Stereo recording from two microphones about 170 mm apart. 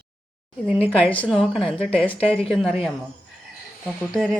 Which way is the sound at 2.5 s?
Centre (ahead or behind).